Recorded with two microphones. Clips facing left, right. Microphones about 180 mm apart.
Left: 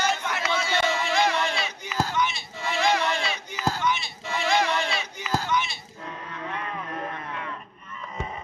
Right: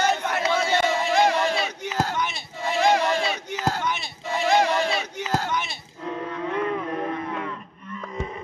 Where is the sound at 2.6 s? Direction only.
45° right (ahead or behind).